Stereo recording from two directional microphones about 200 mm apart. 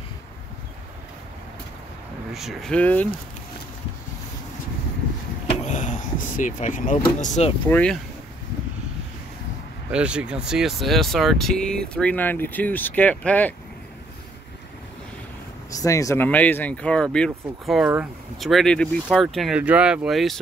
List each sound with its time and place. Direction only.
2.3 s speech: centre (ahead or behind)
5.7 s speech: 40° left (ahead or behind)
7.6 s speech: 5° left (ahead or behind)
9.8 s speech: 5° right (ahead or behind)
15.7 s speech: 15° left (ahead or behind); by 20.3 s centre (ahead or behind)